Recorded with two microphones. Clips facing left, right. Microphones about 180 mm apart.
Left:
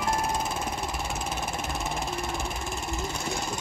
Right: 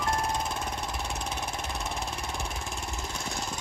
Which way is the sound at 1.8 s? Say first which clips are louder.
Left 4 dB; centre (ahead or behind).